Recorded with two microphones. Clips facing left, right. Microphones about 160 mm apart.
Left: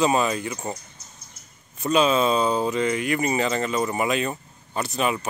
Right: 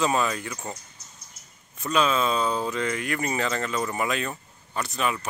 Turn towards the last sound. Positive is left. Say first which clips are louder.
# left 3 dB
turn(degrees=25)  # may be behind; listen again after turning